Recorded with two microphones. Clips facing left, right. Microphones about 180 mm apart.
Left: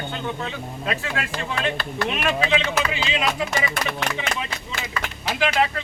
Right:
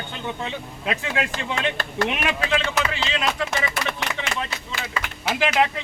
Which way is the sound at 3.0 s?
10° left (ahead or behind).